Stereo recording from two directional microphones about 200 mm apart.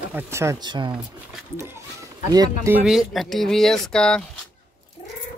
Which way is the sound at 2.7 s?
Centre (ahead or behind).